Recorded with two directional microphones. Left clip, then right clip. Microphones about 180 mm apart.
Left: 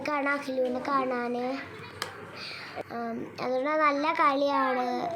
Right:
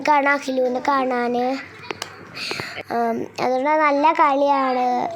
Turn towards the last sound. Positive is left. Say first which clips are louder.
# right 8 dB
turn(degrees=-35)  # may be behind; listen again after turning